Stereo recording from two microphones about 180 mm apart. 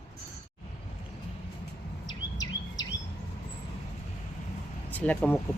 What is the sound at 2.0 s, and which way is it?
Bird vocalization, 20° left (ahead or behind).